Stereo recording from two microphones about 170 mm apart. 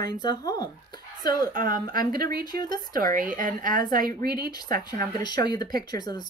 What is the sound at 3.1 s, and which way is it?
Speech, 50° right (ahead or behind).